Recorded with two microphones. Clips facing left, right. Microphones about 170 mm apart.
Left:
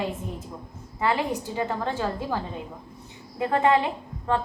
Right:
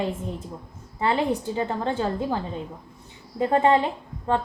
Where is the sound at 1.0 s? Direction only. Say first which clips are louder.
Right 2 dB; 30° right (ahead or behind).